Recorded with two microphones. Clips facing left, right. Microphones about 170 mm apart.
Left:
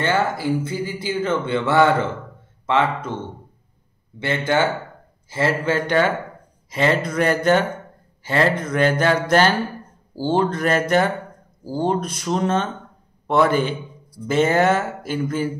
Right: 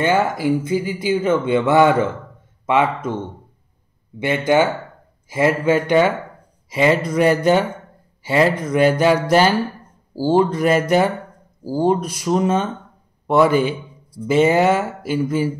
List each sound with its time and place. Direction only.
0.0 s speech: 15° right (ahead or behind)
4.2 s speech: 15° right (ahead or behind)